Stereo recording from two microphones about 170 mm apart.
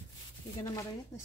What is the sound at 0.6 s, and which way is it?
Speech, 20° left (ahead or behind).